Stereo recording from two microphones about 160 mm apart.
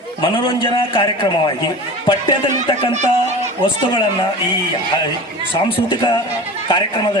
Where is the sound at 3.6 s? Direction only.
30° left (ahead or behind).